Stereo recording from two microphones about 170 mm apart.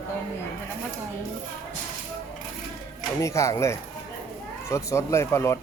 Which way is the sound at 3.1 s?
15° left (ahead or behind).